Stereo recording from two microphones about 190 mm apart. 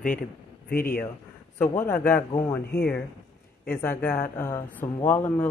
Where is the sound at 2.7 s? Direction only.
5° left (ahead or behind).